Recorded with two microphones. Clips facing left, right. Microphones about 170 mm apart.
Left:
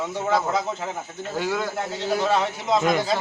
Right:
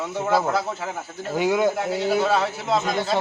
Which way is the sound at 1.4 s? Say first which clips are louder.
Right 6 dB; 20° right (ahead or behind).